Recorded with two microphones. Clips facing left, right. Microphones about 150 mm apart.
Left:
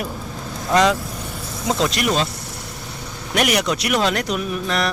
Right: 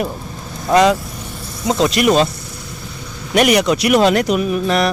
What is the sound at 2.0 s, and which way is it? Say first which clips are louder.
Speech: right 9 dB; 65° right (ahead or behind).